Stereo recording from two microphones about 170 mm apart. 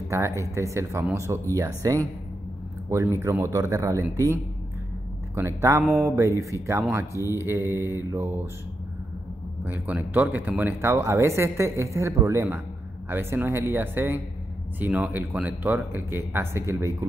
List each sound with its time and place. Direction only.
0.1 s speech: 15° right (ahead or behind)
3.2 s speech: 15° right (ahead or behind)
5.6 s speech: 15° right (ahead or behind)
9.7 s speech: 10° right (ahead or behind)